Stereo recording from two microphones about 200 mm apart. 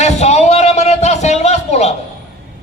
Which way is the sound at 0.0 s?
35° left (ahead or behind).